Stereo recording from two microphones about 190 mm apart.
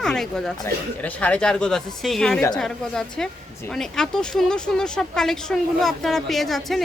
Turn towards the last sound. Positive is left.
turn(degrees=0)  # may be behind; listen again after turning